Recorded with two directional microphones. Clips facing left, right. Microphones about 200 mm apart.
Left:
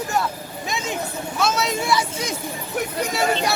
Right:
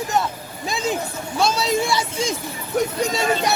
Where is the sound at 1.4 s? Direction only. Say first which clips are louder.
Right 3 dB; 30° right (ahead or behind).